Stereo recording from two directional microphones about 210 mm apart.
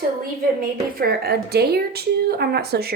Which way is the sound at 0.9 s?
45° right (ahead or behind).